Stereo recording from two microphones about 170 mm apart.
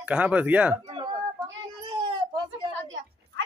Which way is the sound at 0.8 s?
30° right (ahead or behind).